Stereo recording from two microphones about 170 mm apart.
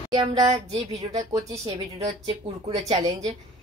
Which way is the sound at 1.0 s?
20° right (ahead or behind).